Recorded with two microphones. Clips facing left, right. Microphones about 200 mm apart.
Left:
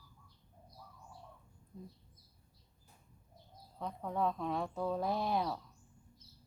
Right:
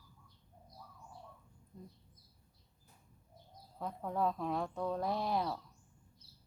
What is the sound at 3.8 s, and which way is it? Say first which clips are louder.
Speech: even; 5° right (ahead or behind).